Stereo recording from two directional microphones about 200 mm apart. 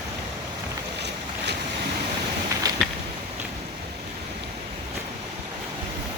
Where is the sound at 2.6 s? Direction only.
20° right (ahead or behind).